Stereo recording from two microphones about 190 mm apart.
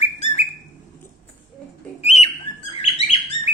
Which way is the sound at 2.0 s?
35° left (ahead or behind).